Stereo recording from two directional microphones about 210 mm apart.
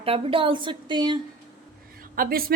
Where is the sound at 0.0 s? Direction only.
25° right (ahead or behind).